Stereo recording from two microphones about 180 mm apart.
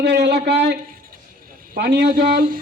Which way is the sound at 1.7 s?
55° right (ahead or behind).